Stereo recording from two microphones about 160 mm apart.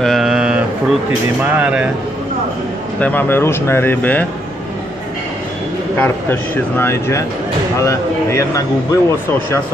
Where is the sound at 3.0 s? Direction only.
10° left (ahead or behind).